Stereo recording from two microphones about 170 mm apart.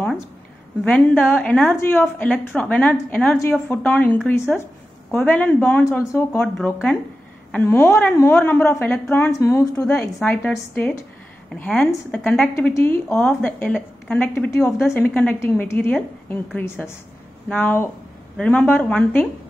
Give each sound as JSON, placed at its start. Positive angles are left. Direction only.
{"t": 0.8, "sound": "speech", "side_deg": 10}
{"t": 9.9, "sound": "speech", "side_deg": 5}